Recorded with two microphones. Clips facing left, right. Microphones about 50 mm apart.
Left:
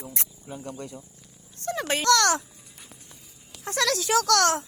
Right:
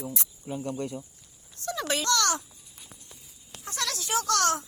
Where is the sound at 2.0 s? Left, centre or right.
Left.